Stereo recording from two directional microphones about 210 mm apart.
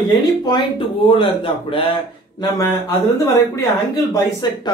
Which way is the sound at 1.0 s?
25° left (ahead or behind).